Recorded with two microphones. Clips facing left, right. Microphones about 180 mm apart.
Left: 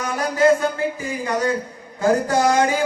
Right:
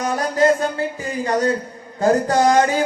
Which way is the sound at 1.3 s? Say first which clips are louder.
Right 2 dB; 35° right (ahead or behind).